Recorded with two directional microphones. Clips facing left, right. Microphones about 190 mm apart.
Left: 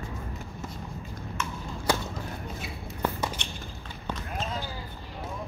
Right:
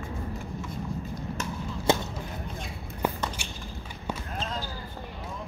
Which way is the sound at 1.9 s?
25° right (ahead or behind).